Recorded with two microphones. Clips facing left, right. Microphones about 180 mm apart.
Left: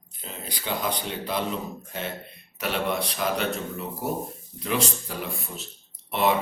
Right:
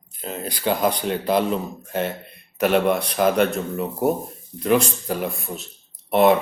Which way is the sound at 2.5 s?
55° right (ahead or behind).